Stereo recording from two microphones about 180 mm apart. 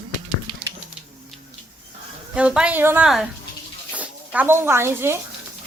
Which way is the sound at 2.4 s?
5° right (ahead or behind).